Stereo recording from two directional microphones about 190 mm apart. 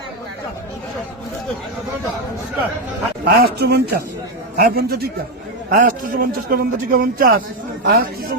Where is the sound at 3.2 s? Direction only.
55° right (ahead or behind).